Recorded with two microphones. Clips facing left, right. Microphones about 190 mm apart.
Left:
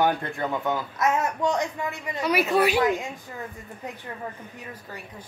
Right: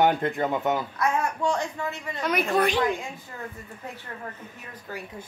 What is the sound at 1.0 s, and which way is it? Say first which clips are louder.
Speech: left 3 dB; 20° left (ahead or behind).